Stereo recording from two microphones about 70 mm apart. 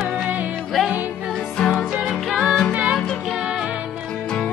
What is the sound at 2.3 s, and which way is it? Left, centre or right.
Music, centre.